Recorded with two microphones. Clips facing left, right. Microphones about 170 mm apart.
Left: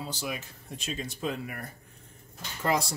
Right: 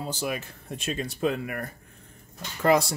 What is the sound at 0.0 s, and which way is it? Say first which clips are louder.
Speech: right 5 dB; 50° right (ahead or behind).